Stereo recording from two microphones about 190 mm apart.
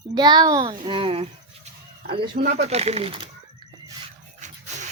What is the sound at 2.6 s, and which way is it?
Speech, 35° right (ahead or behind).